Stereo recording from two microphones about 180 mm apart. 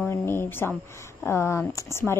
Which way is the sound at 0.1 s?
15° left (ahead or behind).